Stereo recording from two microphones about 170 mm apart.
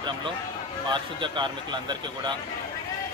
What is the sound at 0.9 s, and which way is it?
Speech, 25° right (ahead or behind).